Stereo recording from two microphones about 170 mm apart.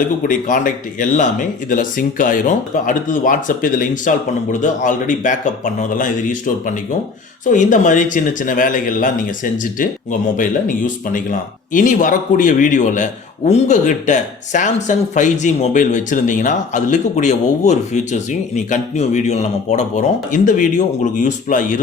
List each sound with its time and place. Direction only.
0.2 s speech: 50° left (ahead or behind)